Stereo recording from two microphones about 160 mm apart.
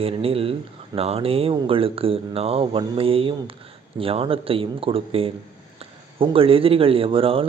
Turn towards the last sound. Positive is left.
turn(degrees=-35)  # may be behind; listen again after turning